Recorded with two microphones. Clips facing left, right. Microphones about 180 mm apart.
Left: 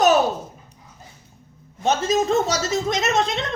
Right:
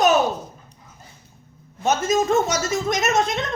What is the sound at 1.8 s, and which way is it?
Speech, 30° left (ahead or behind).